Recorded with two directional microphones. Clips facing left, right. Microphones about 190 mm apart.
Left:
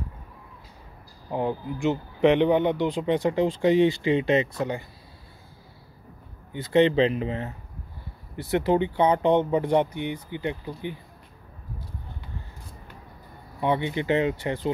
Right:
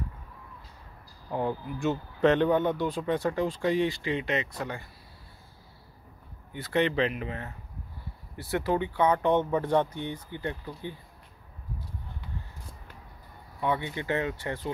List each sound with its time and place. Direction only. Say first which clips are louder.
1.3 s speech: left 3 dB; 20° left (ahead or behind)
6.5 s speech: left 7 dB; 20° left (ahead or behind)
13.6 s speech: left 5 dB; 20° left (ahead or behind)